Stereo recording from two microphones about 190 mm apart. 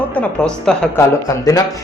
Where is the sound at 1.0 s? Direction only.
15° left (ahead or behind).